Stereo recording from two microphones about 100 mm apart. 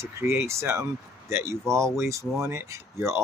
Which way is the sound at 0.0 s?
25° right (ahead or behind).